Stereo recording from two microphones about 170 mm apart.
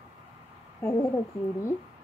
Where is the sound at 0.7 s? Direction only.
15° left (ahead or behind).